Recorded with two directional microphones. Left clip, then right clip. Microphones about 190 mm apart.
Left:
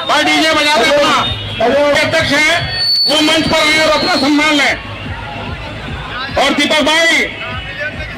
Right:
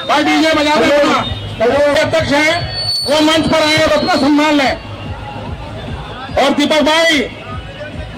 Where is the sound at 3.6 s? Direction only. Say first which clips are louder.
Left 1 dB; 70° right (ahead or behind).